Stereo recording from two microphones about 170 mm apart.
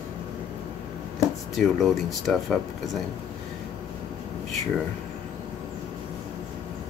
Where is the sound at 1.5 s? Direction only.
Centre (ahead or behind).